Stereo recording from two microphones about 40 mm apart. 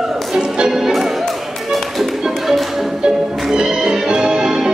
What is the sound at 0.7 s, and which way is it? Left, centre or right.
Music, centre.